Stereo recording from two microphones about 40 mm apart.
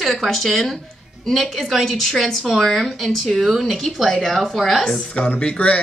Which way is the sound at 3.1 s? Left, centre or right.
Centre.